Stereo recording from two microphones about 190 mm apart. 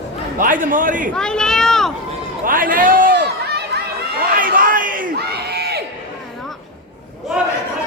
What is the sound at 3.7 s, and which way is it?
Chatter, 55° right (ahead or behind).